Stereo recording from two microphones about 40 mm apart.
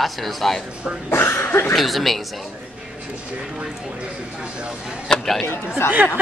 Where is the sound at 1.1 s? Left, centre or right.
Left.